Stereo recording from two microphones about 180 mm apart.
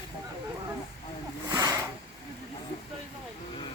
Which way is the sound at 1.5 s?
20° right (ahead or behind).